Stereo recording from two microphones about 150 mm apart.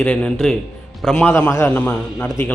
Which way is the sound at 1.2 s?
15° left (ahead or behind).